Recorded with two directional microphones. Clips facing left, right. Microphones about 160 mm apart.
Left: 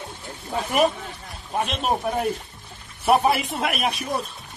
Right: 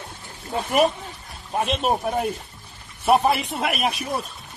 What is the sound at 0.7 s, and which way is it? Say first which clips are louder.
Speech: right 1 dB; centre (ahead or behind).